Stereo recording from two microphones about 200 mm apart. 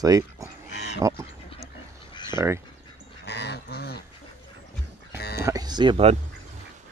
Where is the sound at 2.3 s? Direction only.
15° right (ahead or behind).